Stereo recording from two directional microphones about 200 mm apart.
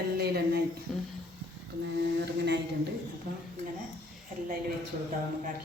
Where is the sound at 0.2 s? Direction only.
50° right (ahead or behind).